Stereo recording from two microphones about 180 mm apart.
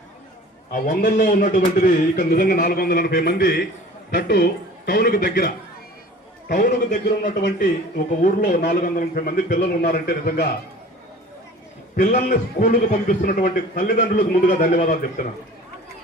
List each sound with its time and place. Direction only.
0.7 s a man's voice: 55° left (ahead or behind)
6.5 s speech: 45° left (ahead or behind)
11.9 s speech: 45° left (ahead or behind)